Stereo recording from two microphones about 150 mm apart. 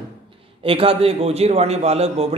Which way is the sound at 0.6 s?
40° right (ahead or behind).